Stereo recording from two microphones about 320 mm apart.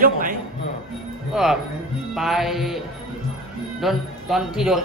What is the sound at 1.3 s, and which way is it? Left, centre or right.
A man's voice, centre.